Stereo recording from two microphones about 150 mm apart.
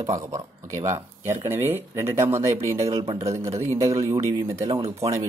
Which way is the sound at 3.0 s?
35° right (ahead or behind).